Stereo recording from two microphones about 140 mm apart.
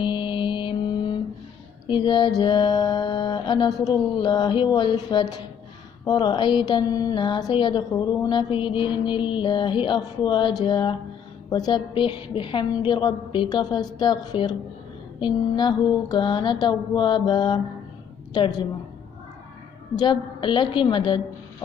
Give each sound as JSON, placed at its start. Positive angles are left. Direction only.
{"t": 0.0, "sound": "mantra", "side_deg": 35}
{"t": 1.9, "sound": "a woman's voice", "side_deg": 35}
{"t": 20.0, "sound": "a woman's voice", "side_deg": 35}